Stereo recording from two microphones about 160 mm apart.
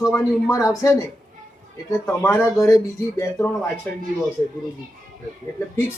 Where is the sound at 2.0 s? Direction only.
10° left (ahead or behind).